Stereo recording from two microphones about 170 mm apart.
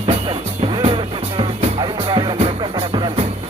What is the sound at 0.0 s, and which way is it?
Music, 35° right (ahead or behind).